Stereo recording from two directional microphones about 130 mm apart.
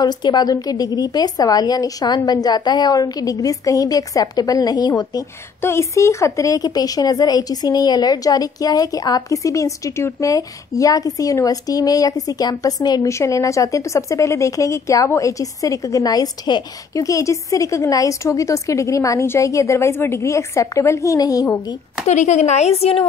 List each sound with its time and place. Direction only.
0.0 s a woman's voice: 35° left (ahead or behind)
5.6 s a woman's voice: 20° left (ahead or behind)
22.0 s speech: 65° left (ahead or behind); by 23.0 s 50° left (ahead or behind)